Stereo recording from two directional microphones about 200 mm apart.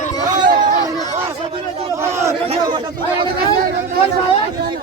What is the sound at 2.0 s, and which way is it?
Chatter, 15° right (ahead or behind).